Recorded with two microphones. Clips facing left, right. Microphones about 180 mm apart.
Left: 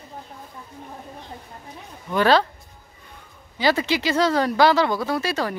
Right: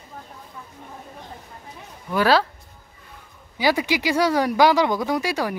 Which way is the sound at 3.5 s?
10° right (ahead or behind).